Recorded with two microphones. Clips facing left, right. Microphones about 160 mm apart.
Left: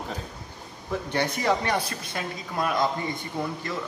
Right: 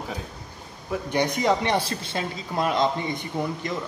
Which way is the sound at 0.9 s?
15° right (ahead or behind).